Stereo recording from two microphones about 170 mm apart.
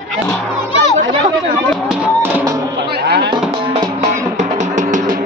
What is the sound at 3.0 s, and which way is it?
Music, 75° right (ahead or behind).